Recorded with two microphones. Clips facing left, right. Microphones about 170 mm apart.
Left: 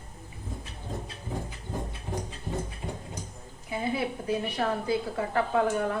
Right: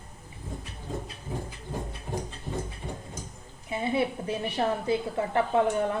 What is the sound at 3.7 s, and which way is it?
A woman's voice, 25° right (ahead or behind).